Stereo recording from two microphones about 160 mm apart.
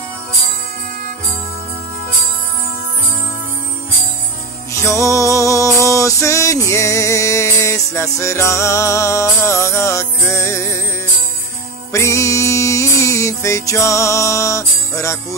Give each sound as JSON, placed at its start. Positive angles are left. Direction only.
{"t": 4.7, "sound": "music", "side_deg": 20}
{"t": 11.9, "sound": "music", "side_deg": 20}